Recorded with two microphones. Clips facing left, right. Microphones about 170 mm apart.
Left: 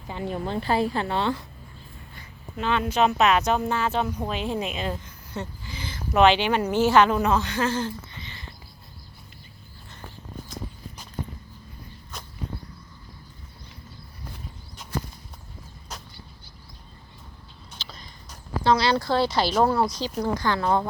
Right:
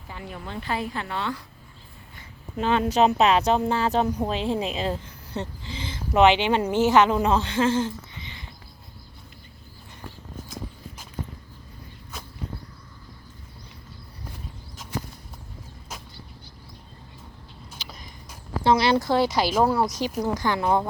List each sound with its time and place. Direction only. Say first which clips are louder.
0.1 s a woman's voice: left 7 dB; 30° left (ahead or behind)
2.6 s speech: right 2 dB; 40° right (ahead or behind); by 8.4 s 15° right (ahead or behind)
17.7 s a sound: even; 10° right (ahead or behind)
20.1 s a woman's voice: left 1 dB; 5° right (ahead or behind)
20.4 s a woman's voice: right 1 dB; 15° right (ahead or behind)